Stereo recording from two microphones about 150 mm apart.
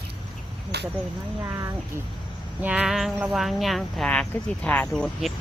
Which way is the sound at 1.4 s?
20° right (ahead or behind).